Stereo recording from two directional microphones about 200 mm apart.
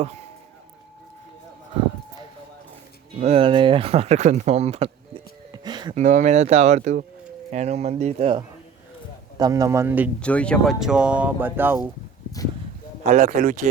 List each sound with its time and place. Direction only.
3.2 s speech: 30° right (ahead or behind)
6.0 s speech: 35° right (ahead or behind)
9.4 s speech: 15° right (ahead or behind)
10.2 s speech: 5° left (ahead or behind); by 11.9 s 10° right (ahead or behind)
13.1 s speech: 35° right (ahead or behind)